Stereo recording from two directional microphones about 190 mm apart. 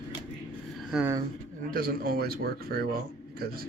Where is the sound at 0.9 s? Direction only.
5° right (ahead or behind).